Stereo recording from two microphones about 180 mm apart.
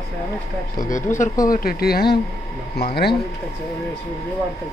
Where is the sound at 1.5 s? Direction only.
55° left (ahead or behind).